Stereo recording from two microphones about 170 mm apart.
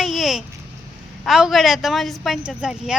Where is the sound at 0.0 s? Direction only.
Centre (ahead or behind).